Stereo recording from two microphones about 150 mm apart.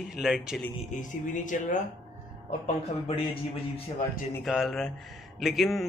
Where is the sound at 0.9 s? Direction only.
55° left (ahead or behind).